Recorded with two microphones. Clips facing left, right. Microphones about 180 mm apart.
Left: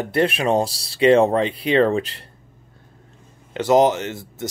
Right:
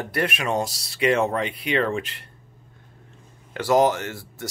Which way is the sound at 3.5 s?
20° left (ahead or behind).